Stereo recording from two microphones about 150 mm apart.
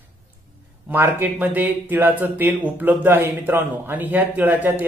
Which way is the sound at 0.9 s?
15° right (ahead or behind).